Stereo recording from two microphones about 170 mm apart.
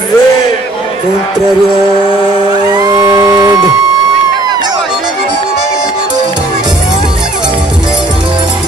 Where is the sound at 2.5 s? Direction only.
25° right (ahead or behind).